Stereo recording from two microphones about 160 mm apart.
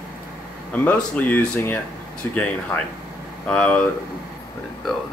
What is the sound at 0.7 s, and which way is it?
Speech, 10° left (ahead or behind).